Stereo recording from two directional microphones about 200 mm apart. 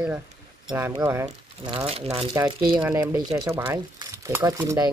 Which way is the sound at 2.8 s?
10° right (ahead or behind).